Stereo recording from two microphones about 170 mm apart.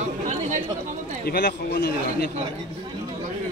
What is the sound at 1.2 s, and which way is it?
A man's voice, 75° left (ahead or behind).